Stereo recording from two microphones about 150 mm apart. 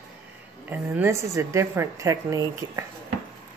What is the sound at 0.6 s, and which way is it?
A woman's voice, 10° right (ahead or behind).